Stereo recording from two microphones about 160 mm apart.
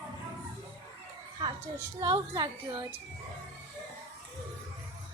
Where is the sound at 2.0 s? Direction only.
30° right (ahead or behind).